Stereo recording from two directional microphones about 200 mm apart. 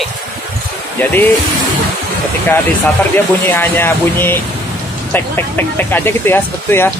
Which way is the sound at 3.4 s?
10° left (ahead or behind).